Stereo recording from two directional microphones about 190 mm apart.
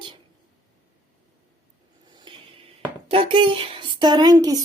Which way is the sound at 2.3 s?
25° right (ahead or behind).